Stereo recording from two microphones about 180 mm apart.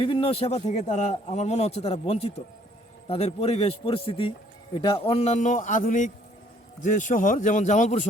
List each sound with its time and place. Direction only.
0.0 s a man's voice: 30° left (ahead or behind)